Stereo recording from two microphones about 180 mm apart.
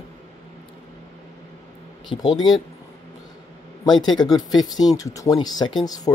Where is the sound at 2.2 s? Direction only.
25° left (ahead or behind).